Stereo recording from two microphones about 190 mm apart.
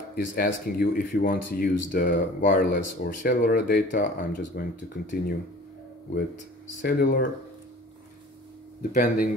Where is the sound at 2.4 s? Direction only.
50° left (ahead or behind).